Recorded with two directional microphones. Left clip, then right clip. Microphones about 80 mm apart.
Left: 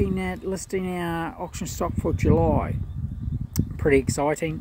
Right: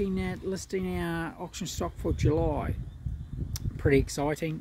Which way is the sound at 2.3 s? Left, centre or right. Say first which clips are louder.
Left 8 dB; right.